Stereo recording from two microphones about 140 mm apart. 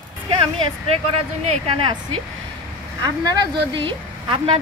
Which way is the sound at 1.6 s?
35° right (ahead or behind).